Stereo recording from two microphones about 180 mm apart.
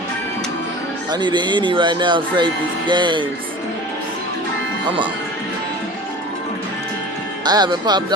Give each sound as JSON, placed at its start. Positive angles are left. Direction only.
{"t": 1.1, "sound": "speech", "side_deg": -25}
{"t": 7.4, "sound": "speech", "side_deg": -25}